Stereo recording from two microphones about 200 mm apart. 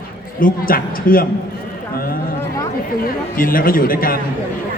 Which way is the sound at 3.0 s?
45° left (ahead or behind).